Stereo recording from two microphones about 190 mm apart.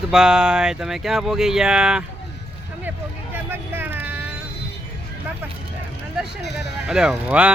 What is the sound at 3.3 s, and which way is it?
Vehicle, 10° right (ahead or behind).